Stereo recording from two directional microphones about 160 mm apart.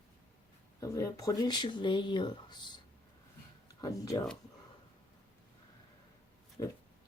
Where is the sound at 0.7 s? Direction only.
20° left (ahead or behind).